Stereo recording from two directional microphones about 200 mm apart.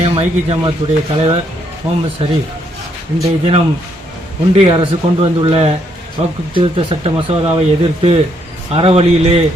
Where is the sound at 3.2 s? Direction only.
30° right (ahead or behind).